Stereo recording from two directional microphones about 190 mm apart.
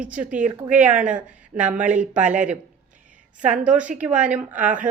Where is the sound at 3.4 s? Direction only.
5° right (ahead or behind).